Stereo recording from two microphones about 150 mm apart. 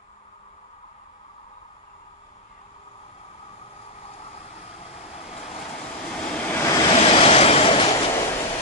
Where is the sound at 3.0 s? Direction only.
40° left (ahead or behind).